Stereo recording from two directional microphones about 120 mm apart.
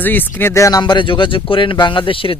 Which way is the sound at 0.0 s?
15° left (ahead or behind).